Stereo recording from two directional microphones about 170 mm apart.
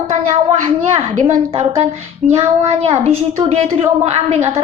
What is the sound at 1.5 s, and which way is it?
A woman's voice, 35° right (ahead or behind).